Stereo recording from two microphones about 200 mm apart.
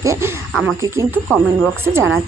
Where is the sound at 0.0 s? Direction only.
15° right (ahead or behind).